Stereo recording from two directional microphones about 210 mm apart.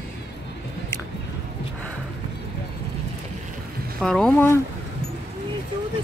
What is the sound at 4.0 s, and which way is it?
Speech, centre (ahead or behind).